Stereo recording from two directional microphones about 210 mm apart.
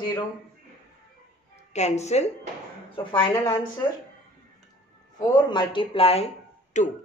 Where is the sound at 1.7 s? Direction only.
30° left (ahead or behind).